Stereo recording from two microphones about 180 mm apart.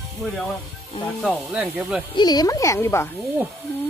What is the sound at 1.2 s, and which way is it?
Speech, 5° left (ahead or behind).